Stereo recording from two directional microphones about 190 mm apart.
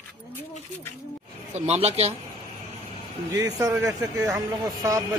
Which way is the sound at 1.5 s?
35° right (ahead or behind).